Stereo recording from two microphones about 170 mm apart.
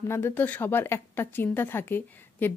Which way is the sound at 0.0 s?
15° left (ahead or behind).